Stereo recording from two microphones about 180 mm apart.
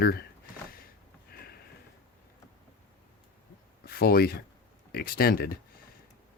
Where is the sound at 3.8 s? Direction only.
60° left (ahead or behind).